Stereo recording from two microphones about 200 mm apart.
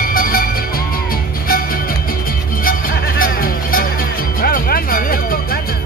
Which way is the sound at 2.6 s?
45° left (ahead or behind).